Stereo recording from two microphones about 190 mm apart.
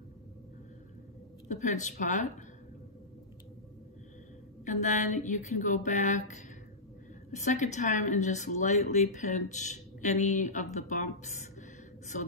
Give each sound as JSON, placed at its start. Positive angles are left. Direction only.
{"t": 1.5, "sound": "a woman's voice", "side_deg": 40}
{"t": 4.6, "sound": "a woman's voice", "side_deg": 40}